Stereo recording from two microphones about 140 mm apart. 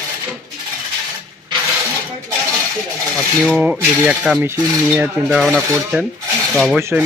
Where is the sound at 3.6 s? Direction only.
10° right (ahead or behind).